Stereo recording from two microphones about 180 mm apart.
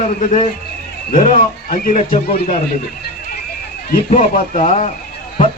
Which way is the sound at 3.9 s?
45° left (ahead or behind).